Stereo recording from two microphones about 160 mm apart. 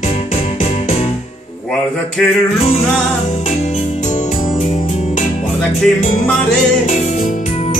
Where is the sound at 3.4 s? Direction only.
45° left (ahead or behind).